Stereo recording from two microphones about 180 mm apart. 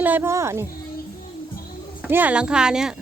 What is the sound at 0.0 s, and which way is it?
Speech, 10° right (ahead or behind).